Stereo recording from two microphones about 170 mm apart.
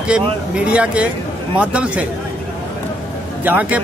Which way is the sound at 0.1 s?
5° right (ahead or behind).